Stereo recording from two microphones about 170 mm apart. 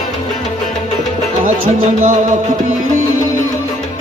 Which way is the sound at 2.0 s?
45° right (ahead or behind).